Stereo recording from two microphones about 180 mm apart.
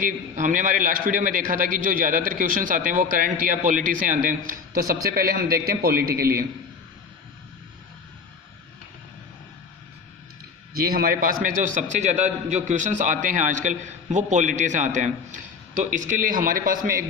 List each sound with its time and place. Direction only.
0.0 s a man's voice: 45° right (ahead or behind)
10.8 s a man's voice: 55° right (ahead or behind)